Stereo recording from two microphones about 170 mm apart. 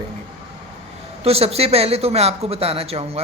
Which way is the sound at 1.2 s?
35° right (ahead or behind).